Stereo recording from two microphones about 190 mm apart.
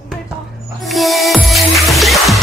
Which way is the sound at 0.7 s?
Centre (ahead or behind).